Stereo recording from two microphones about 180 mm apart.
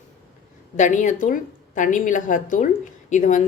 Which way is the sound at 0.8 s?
45° left (ahead or behind).